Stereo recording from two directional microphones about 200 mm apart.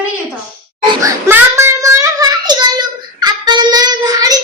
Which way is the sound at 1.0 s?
15° right (ahead or behind).